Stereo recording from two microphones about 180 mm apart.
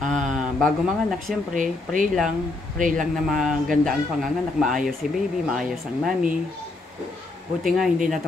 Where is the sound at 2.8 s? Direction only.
45° right (ahead or behind).